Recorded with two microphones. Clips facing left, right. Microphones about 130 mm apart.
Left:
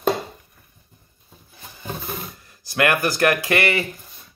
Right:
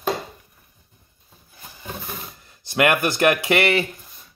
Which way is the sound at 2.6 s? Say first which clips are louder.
Right 1 dB; 20° right (ahead or behind).